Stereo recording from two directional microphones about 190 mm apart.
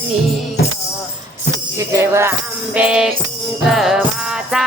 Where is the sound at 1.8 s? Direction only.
15° right (ahead or behind).